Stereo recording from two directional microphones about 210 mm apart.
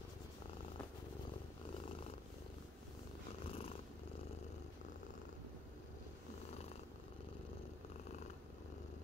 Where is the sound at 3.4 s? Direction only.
25° left (ahead or behind).